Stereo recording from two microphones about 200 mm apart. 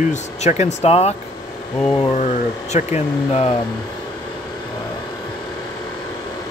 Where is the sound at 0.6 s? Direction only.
35° left (ahead or behind).